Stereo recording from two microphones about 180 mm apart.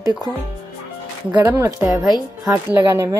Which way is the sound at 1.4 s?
15° right (ahead or behind).